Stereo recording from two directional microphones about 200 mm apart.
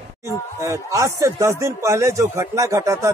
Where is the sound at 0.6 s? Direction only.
15° right (ahead or behind).